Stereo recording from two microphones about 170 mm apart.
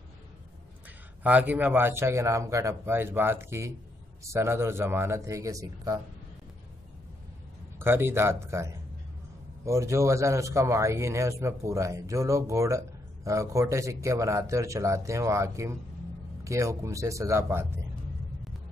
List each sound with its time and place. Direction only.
1.2 s speech: 10° right (ahead or behind)
7.8 s speech: 15° right (ahead or behind)